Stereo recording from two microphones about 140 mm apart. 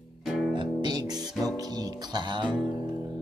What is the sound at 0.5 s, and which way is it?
Music, 30° right (ahead or behind).